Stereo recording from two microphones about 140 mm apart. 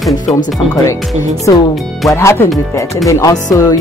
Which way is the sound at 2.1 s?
20° left (ahead or behind).